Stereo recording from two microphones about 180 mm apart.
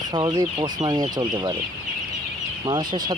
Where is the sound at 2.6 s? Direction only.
25° right (ahead or behind).